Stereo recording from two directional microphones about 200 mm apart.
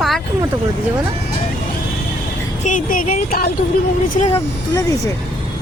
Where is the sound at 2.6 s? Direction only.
40° left (ahead or behind).